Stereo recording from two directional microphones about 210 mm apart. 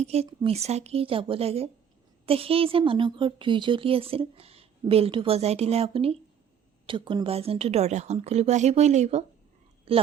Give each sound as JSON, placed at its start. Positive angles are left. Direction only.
{"t": 0.0, "sound": "a woman's voice", "side_deg": -30}